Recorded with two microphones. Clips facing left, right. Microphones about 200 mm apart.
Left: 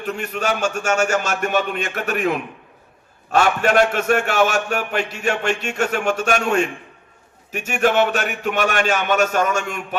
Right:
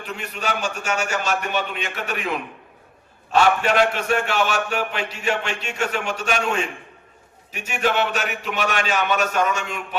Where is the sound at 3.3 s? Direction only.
45° left (ahead or behind).